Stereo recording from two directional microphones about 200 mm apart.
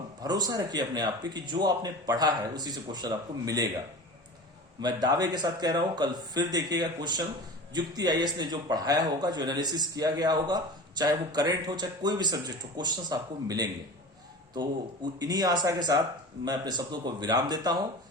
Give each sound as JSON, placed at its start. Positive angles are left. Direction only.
{"t": 0.2, "sound": "a man's voice", "side_deg": -20}
{"t": 4.8, "sound": "a man's voice", "side_deg": -20}
{"t": 15.2, "sound": "a man's voice", "side_deg": -20}